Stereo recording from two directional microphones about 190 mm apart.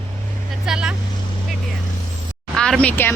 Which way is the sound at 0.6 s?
5° right (ahead or behind).